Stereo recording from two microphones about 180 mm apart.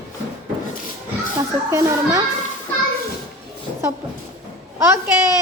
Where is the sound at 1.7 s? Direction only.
15° right (ahead or behind).